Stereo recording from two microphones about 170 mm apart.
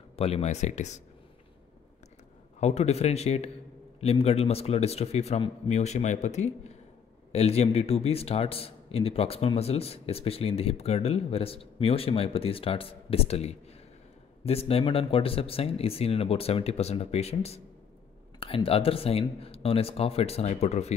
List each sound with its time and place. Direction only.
0.1 s a man's voice: 35° left (ahead or behind)
2.6 s a man's voice: 40° left (ahead or behind)